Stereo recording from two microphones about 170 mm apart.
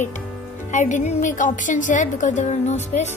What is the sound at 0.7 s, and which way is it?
A woman's voice, 45° left (ahead or behind).